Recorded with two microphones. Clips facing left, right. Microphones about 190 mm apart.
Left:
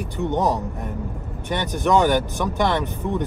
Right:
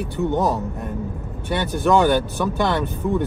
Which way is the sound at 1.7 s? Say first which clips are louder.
Right 1 dB; 15° left (ahead or behind).